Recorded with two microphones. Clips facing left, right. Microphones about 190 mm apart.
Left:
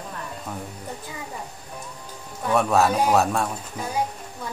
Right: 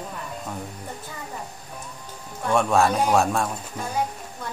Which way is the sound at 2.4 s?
5° left (ahead or behind).